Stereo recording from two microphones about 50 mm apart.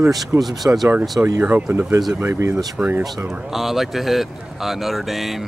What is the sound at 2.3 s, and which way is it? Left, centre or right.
Speech, right.